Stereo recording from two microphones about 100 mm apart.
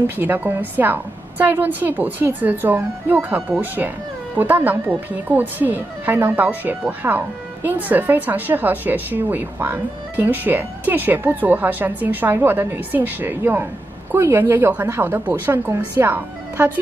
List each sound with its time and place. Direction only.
0.0 s speech: 20° right (ahead or behind)